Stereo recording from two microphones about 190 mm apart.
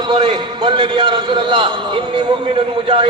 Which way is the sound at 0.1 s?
25° right (ahead or behind).